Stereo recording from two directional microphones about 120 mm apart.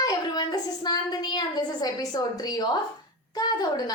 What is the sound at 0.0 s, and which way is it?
A woman's voice, 35° left (ahead or behind).